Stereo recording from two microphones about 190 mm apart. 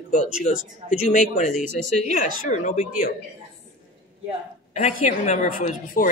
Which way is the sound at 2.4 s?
45° left (ahead or behind).